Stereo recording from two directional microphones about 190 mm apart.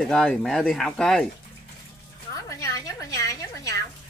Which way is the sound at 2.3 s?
15° left (ahead or behind).